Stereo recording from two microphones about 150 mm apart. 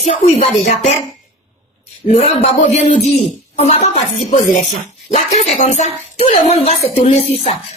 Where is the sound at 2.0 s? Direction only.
45° left (ahead or behind).